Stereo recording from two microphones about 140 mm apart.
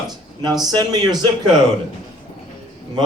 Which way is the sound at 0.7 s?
30° right (ahead or behind).